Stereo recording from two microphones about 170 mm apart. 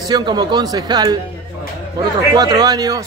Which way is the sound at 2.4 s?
25° right (ahead or behind).